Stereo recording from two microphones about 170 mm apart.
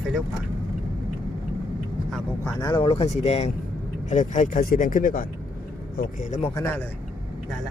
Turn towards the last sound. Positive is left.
turn(degrees=15)  # may be behind; listen again after turning